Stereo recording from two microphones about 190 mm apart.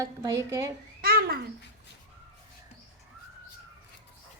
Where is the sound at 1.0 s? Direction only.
50° right (ahead or behind).